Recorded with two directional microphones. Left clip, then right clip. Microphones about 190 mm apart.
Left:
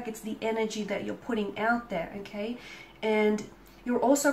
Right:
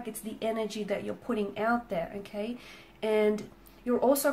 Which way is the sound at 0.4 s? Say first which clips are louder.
Left 2 dB; 45° right (ahead or behind).